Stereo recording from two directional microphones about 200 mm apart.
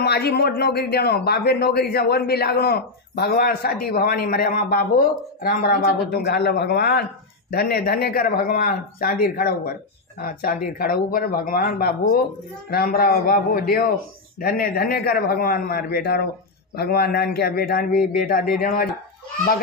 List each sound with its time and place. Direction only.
0.0 s a man's voice: 55° left (ahead or behind)